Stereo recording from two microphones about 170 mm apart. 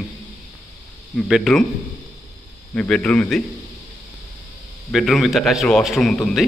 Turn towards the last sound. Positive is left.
turn(degrees=5)  # may be behind; listen again after turning